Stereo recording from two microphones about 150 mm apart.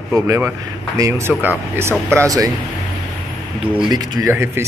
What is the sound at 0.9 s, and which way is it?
A man's voice, 20° right (ahead or behind).